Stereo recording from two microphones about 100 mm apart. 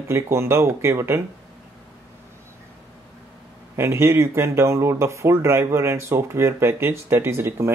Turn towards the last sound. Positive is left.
turn(degrees=-25)  # may be behind; listen again after turning